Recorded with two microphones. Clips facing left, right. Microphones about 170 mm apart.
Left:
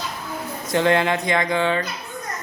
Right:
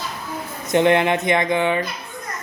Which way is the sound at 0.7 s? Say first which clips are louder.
Right 3 dB; 20° right (ahead or behind).